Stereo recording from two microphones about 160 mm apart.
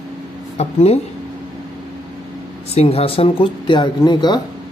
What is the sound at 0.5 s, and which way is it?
Speech, 40° left (ahead or behind).